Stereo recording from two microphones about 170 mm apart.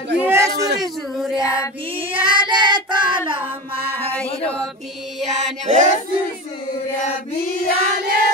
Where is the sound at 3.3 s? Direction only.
30° right (ahead or behind).